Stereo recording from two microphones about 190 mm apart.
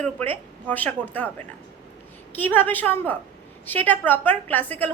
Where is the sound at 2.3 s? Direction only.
10° left (ahead or behind).